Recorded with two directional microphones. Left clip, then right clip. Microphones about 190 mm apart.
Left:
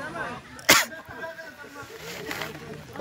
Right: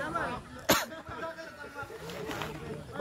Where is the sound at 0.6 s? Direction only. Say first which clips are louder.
Left 9 dB; centre (ahead or behind).